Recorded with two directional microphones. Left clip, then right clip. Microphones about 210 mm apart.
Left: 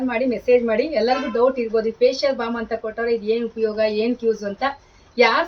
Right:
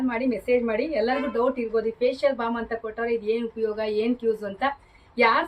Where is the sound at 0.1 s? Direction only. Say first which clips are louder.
Left 8 dB; centre (ahead or behind).